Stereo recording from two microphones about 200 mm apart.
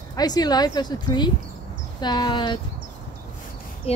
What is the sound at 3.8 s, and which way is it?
Speech, 30° left (ahead or behind).